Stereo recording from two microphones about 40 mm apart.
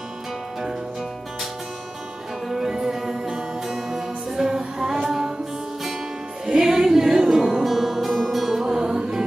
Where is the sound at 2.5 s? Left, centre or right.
Centre.